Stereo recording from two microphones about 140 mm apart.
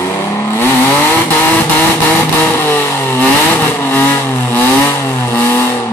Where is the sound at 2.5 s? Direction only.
15° left (ahead or behind).